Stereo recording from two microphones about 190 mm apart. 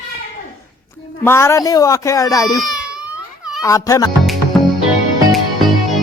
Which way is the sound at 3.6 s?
15° left (ahead or behind).